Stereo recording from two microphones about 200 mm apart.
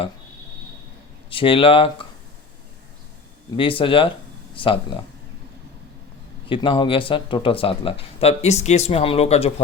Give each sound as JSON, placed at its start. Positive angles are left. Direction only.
{"t": 1.3, "sound": "speech", "side_deg": 25}
{"t": 3.6, "sound": "speech", "side_deg": 25}
{"t": 6.5, "sound": "speech", "side_deg": 25}